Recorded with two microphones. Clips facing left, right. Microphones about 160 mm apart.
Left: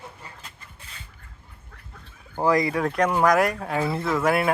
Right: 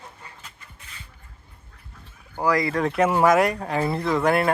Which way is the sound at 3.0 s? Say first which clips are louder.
Right 2 dB; 5° right (ahead or behind).